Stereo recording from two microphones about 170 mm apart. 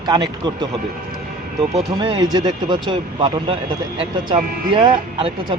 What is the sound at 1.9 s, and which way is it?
Speech, 25° right (ahead or behind).